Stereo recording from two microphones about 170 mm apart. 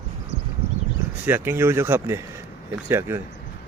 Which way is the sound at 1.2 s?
10° right (ahead or behind).